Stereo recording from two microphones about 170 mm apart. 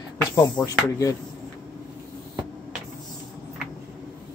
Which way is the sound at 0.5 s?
20° left (ahead or behind).